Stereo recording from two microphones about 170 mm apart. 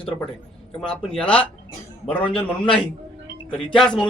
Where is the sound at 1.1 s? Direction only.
5° left (ahead or behind).